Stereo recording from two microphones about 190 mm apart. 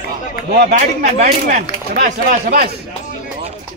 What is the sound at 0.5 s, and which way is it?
Speech, 55° right (ahead or behind).